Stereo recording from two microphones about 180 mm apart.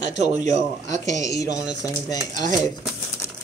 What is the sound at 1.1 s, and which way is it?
A man's voice, 20° left (ahead or behind).